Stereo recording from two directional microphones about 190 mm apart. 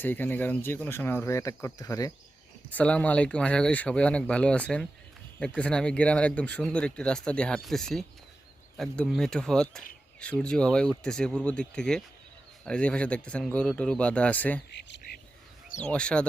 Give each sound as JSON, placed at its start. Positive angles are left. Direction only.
{"t": 0.0, "sound": "speech", "side_deg": 10}
{"t": 2.7, "sound": "speech", "side_deg": 5}
{"t": 14.7, "sound": "speech", "side_deg": 65}
{"t": 15.7, "sound": "speech", "side_deg": 5}